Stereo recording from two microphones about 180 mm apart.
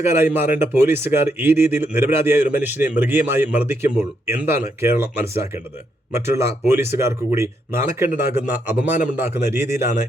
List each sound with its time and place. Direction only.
0.0 s speech: 15° right (ahead or behind)